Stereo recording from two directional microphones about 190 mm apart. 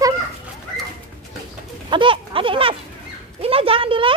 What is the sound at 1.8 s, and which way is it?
A child's voice, 25° right (ahead or behind).